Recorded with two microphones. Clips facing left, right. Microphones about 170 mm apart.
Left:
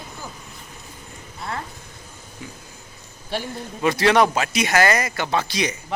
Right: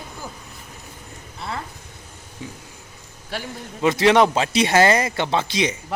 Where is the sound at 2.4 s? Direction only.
25° right (ahead or behind).